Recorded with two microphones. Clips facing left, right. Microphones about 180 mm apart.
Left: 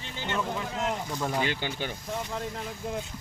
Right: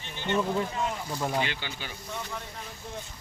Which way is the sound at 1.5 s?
45° left (ahead or behind).